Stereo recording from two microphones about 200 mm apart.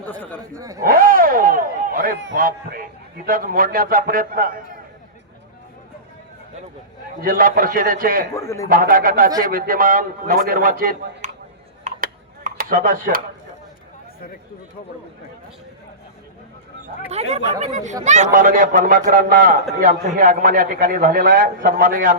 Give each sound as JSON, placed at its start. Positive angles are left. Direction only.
{"t": 0.0, "sound": "a sound", "side_deg": 10}
{"t": 0.5, "sound": "speech", "side_deg": -15}
{"t": 0.8, "sound": "a sound", "side_deg": -45}
{"t": 2.3, "sound": "a man's voice", "side_deg": -45}
{"t": 7.2, "sound": "a man's voice", "side_deg": -45}
{"t": 8.3, "sound": "a man's voice", "side_deg": 15}
{"t": 8.7, "sound": "a man's voice", "side_deg": -45}
{"t": 11.9, "sound": "computer keyboard", "side_deg": -35}
{"t": 17.1, "sound": "a man's voice", "side_deg": -30}